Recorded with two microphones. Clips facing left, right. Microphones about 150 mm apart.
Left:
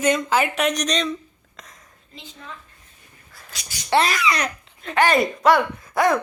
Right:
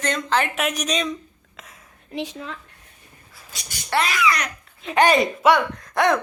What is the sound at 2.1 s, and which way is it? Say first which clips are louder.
Speech: right 11 dB; 85° right.